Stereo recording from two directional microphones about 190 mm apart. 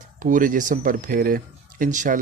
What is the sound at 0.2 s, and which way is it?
Speech, 45° right (ahead or behind).